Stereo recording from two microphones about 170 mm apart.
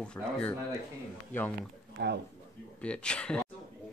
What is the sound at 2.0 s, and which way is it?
Speech, 80° right.